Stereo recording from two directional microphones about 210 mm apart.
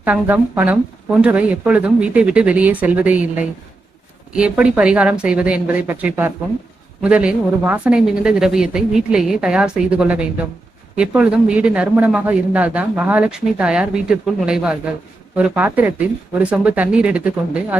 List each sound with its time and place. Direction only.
0.0 s speech: 10° right (ahead or behind)